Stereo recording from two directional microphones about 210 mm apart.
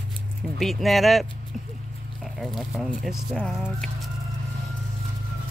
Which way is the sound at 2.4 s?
Centre (ahead or behind).